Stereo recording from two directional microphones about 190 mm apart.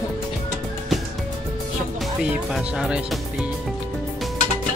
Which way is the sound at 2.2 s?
5° right (ahead or behind).